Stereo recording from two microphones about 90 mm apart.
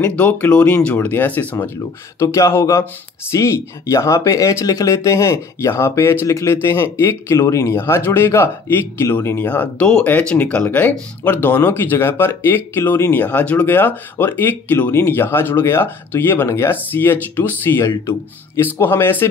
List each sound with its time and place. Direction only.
0.0 s speech: 15° left (ahead or behind)
2.1 s speech: 35° left (ahead or behind)